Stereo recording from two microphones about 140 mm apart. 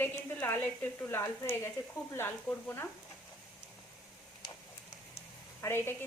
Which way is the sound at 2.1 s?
15° left (ahead or behind).